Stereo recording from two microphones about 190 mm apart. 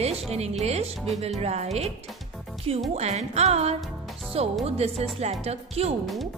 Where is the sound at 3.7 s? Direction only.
Centre (ahead or behind).